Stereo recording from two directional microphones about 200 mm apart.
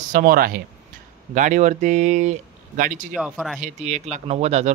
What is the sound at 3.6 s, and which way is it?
Speech, 35° right (ahead or behind).